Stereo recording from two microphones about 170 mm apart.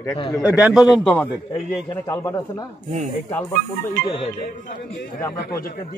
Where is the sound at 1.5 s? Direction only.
25° left (ahead or behind).